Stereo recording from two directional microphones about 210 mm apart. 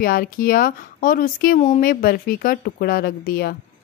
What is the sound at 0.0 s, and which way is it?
Speech, 45° left (ahead or behind).